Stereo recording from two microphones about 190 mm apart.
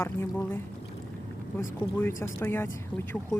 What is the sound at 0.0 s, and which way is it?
Speech, 10° left (ahead or behind).